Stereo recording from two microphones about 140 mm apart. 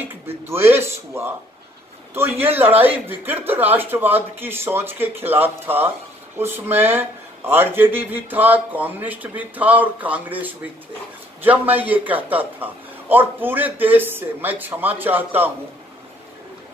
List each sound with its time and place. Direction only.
0.0 s speech: 15° right (ahead or behind)